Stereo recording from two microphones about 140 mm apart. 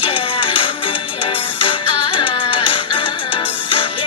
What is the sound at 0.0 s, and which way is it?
Music, 40° left (ahead or behind).